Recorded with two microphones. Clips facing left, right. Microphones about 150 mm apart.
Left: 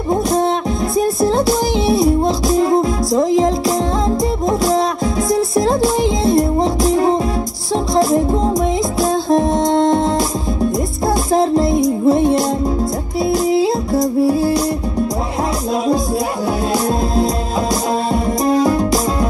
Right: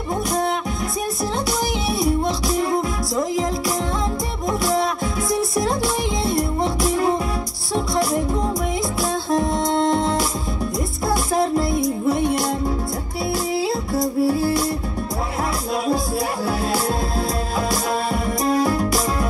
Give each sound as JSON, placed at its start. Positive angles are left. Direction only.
{"t": 0.1, "sound": "music", "side_deg": 25}
{"t": 11.3, "sound": "music", "side_deg": 25}
{"t": 18.1, "sound": "music", "side_deg": 25}